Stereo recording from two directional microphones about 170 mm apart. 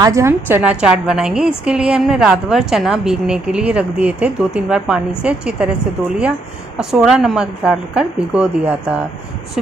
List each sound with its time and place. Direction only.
0.0 s a woman's voice: 15° right (ahead or behind)